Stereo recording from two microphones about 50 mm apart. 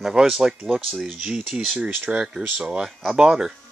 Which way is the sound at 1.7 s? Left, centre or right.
Right.